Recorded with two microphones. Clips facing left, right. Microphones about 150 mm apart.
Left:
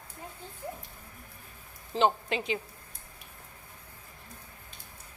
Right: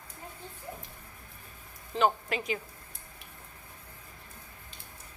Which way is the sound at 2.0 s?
25° left (ahead or behind).